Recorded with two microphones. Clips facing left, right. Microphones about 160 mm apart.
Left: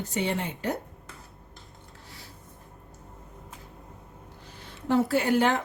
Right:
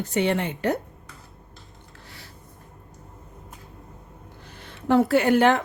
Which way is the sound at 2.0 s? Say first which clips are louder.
Right 2 dB; 70° right (ahead or behind).